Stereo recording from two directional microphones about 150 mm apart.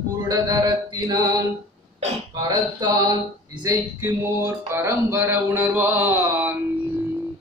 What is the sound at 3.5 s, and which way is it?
A man's voice, 20° right (ahead or behind).